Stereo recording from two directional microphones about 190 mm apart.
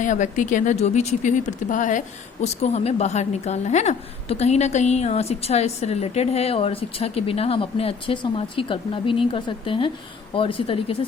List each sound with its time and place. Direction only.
0.0 s speech: 40° left (ahead or behind)